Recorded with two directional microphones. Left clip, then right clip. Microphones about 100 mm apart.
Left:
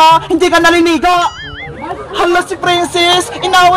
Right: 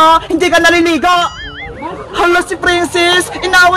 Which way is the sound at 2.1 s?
35° right (ahead or behind).